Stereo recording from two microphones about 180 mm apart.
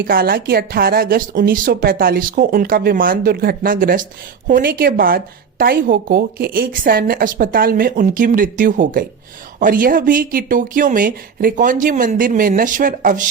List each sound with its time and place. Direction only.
0.0 s a woman's voice: 55° right (ahead or behind)